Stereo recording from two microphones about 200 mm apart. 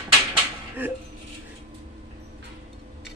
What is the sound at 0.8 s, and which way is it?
Speech, 10° right (ahead or behind).